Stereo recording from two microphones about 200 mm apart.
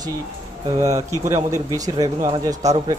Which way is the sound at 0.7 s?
15° right (ahead or behind).